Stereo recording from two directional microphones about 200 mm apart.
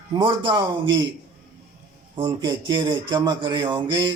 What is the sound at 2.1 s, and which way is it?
Speech, 25° right (ahead or behind).